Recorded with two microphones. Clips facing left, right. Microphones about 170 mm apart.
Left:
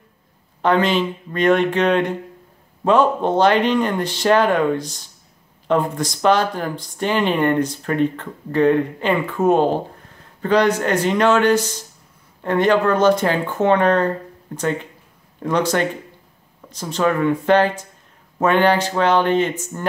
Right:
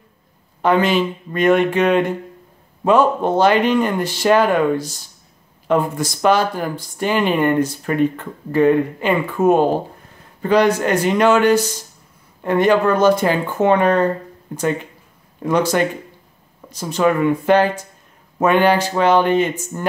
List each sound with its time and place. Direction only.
0.6 s speech: 10° right (ahead or behind)